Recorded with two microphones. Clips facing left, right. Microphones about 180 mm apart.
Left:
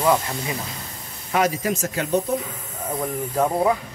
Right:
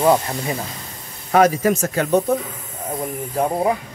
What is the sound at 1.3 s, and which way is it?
Speech, 50° right (ahead or behind).